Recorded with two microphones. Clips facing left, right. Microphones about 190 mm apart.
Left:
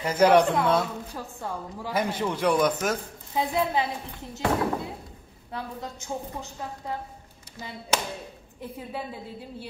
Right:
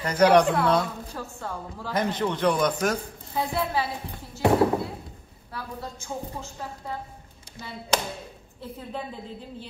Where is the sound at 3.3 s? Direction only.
20° left (ahead or behind).